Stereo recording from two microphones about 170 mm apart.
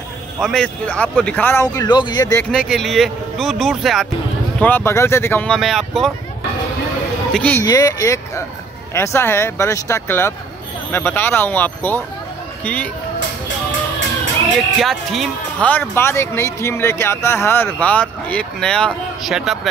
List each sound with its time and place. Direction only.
0.4 s speech: 5° left (ahead or behind); by 2.4 s 25° left (ahead or behind)
2.5 s speech: centre (ahead or behind)
4.6 s speech: 10° left (ahead or behind)
7.3 s speech: 10° left (ahead or behind)
7.6 s speech: 20° left (ahead or behind)
14.8 s speech: centre (ahead or behind)